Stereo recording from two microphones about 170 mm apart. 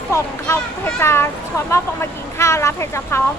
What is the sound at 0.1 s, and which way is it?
Speech, 15° left (ahead or behind).